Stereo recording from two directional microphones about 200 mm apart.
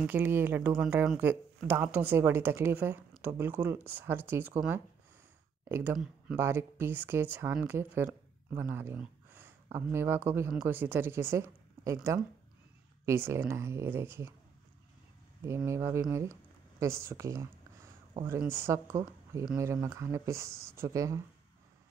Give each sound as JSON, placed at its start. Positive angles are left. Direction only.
{"t": 0.0, "sound": "speech", "side_deg": -10}
{"t": 15.4, "sound": "speech", "side_deg": -15}